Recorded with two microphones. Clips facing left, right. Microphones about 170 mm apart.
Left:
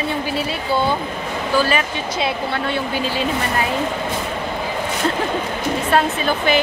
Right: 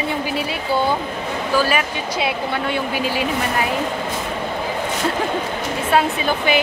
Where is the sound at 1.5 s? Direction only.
10° right (ahead or behind).